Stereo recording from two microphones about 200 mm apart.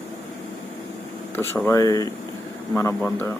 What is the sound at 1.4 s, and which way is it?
Speech, 10° left (ahead or behind).